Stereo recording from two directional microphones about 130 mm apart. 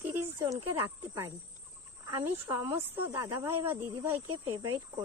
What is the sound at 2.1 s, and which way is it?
Speech, 25° right (ahead or behind).